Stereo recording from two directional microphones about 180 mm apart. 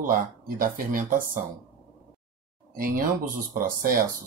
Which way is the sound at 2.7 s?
50° right (ahead or behind).